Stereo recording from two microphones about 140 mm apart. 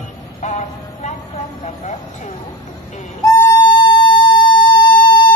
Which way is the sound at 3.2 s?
20° left (ahead or behind).